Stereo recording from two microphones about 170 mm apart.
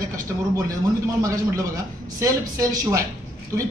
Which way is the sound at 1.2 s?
20° right (ahead or behind).